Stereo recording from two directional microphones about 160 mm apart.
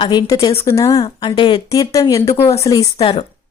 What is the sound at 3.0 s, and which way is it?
Speech, 35° left (ahead or behind).